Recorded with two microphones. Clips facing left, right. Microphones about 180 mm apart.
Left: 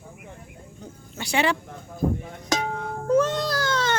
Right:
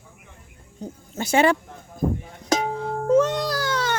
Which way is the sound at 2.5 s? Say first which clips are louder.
Right 4 dB; 30° right (ahead or behind).